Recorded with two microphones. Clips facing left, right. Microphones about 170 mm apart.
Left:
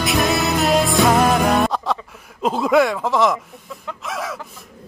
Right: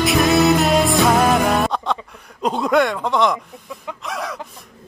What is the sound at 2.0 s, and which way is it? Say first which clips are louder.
Speech: even; 5° left (ahead or behind).